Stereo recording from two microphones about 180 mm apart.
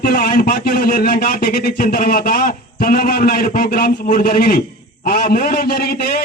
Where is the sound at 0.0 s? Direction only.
55° left (ahead or behind).